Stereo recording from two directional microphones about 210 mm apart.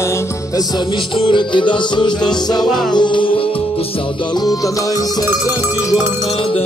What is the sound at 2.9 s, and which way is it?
Music, 20° left (ahead or behind).